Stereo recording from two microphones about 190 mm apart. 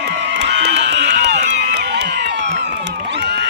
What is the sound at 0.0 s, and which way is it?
Run, 65° right (ahead or behind).